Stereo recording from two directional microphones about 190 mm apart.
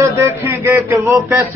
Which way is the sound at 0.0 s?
10° right (ahead or behind).